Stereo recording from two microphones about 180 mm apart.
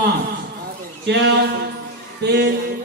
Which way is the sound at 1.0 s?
70° right (ahead or behind).